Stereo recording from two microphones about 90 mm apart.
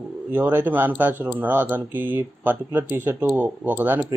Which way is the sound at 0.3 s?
25° right (ahead or behind).